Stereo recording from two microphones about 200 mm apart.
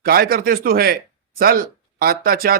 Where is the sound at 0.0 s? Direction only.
50° right (ahead or behind).